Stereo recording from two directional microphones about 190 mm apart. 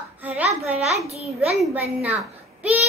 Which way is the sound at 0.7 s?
35° right (ahead or behind).